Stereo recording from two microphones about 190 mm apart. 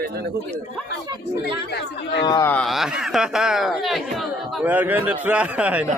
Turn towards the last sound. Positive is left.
turn(degrees=-5)  # may be behind; listen again after turning